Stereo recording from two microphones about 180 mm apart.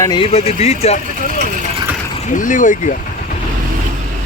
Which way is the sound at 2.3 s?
45° left (ahead or behind).